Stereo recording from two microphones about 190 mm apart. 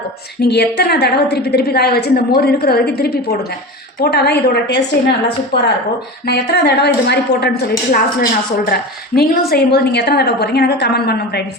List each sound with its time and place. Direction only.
0.4 s a woman's voice: 60° left (ahead or behind)